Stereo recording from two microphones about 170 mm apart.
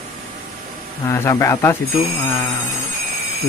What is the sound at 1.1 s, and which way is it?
Speech, 15° left (ahead or behind).